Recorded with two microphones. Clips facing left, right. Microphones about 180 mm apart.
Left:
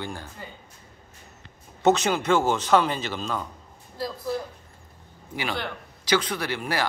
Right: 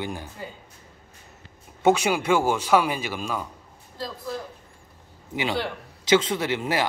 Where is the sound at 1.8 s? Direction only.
10° right (ahead or behind).